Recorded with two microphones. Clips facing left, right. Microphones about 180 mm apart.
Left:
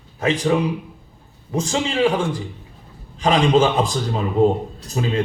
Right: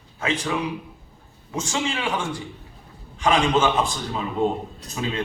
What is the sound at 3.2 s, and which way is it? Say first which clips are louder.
A man's voice: left 4 dB; 35° left (ahead or behind).